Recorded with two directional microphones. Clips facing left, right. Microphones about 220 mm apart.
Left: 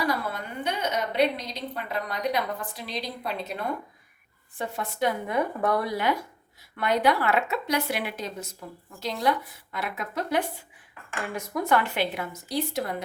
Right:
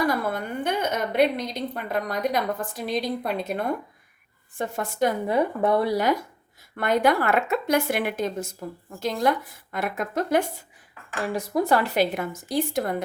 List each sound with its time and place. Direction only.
0.1 s a woman's voice: 50° right (ahead or behind)
5.3 s speech: 25° right (ahead or behind)
6.7 s a woman's voice: 50° right (ahead or behind)
11.3 s a woman's voice: 35° right (ahead or behind); by 13.0 s 50° right (ahead or behind)